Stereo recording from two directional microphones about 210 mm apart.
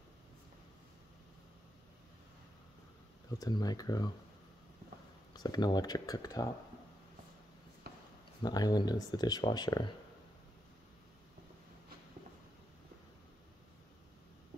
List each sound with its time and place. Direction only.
3.3 s speech: 20° left (ahead or behind)
5.3 s speech: 20° left (ahead or behind)
7.8 s a sound: 45° right (ahead or behind)
8.4 s speech: 20° left (ahead or behind)